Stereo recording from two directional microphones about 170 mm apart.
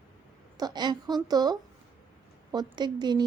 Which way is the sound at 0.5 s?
25° right (ahead or behind).